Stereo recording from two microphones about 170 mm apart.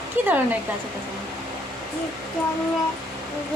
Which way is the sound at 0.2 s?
10° right (ahead or behind).